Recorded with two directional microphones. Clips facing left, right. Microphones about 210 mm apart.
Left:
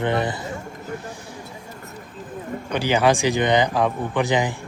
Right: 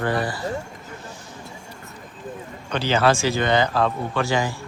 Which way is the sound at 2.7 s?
15° left (ahead or behind).